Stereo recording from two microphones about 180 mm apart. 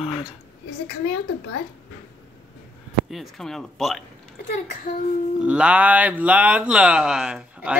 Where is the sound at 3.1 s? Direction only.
Centre (ahead or behind).